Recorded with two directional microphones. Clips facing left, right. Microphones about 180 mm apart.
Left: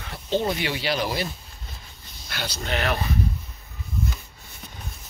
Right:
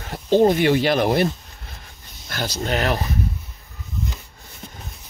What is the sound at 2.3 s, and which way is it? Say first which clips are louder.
Speech: right 5 dB; 45° right (ahead or behind).